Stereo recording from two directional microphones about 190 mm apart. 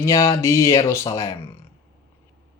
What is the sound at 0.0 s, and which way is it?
Speech, 15° left (ahead or behind).